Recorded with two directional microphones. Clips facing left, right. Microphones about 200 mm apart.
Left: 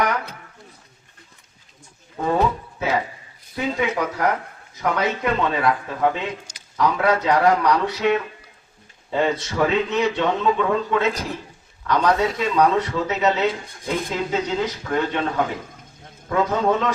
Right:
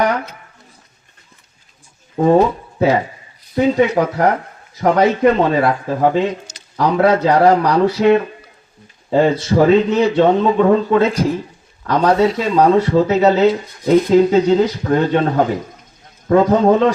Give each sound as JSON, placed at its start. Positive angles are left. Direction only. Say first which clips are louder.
{"t": 2.1, "sound": "speech", "louder": "right 10 dB", "side_deg": -35}
{"t": 3.5, "sound": "speech", "louder": "right 10 dB", "side_deg": -40}